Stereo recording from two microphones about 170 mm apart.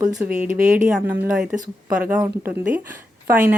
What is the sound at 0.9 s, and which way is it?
Speech, 5° right (ahead or behind).